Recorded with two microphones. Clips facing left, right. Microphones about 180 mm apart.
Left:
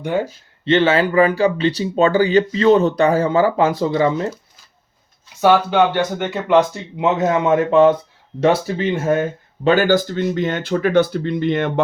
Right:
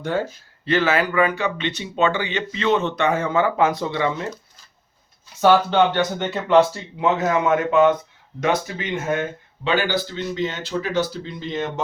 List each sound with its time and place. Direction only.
0.0 s speech: 15° left (ahead or behind); by 4.4 s 30° left (ahead or behind)
5.4 s speech: 10° left (ahead or behind); by 9.2 s 35° left (ahead or behind)
9.6 s speech: 45° left (ahead or behind); by 11.7 s 60° left (ahead or behind)